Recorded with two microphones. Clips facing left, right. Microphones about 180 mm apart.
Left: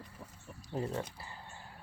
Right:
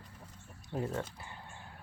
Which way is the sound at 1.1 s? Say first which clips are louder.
Even; centre (ahead or behind).